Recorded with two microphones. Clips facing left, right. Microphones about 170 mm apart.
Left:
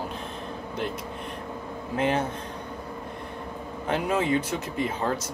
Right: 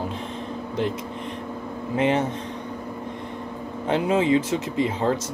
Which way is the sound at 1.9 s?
20° right (ahead or behind).